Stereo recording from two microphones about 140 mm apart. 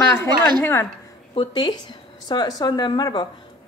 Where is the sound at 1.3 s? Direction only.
30° left (ahead or behind).